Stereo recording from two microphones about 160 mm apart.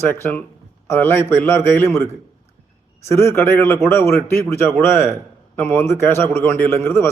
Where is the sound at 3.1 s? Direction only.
15° left (ahead or behind).